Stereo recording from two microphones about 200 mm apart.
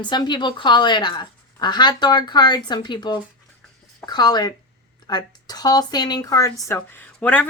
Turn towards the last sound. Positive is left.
turn(degrees=5)  # may be behind; listen again after turning